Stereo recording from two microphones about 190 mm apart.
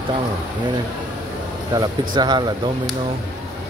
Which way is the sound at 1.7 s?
20° right (ahead or behind).